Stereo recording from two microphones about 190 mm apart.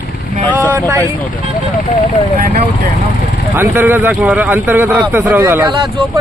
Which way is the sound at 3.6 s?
10° right (ahead or behind).